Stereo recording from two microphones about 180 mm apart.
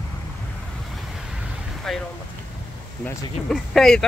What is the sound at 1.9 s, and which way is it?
Speech, centre (ahead or behind).